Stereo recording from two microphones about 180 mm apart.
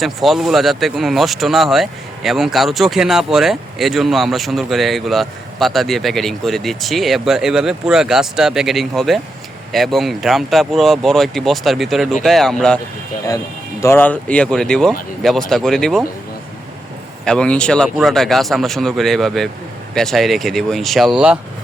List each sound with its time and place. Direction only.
0.0 s speech: centre (ahead or behind)
13.8 s speech: 10° left (ahead or behind)
17.2 s speech: 5° left (ahead or behind)